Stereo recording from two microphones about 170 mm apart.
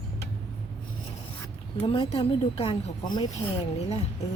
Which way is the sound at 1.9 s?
30° left (ahead or behind).